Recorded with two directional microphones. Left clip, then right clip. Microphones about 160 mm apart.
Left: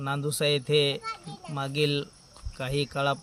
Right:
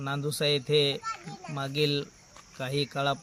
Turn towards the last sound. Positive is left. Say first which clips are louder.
# left 1 dB
turn(degrees=0)  # may be behind; listen again after turning